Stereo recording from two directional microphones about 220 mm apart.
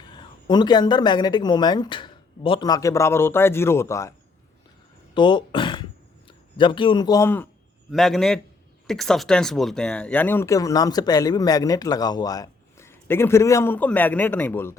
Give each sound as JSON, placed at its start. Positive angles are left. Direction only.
{"t": 0.2, "sound": "speech", "side_deg": 20}
{"t": 5.1, "sound": "a sound", "side_deg": 20}
{"t": 7.9, "sound": "a man's voice", "side_deg": 0}